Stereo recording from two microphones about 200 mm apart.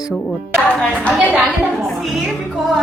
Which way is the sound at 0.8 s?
Centre (ahead or behind).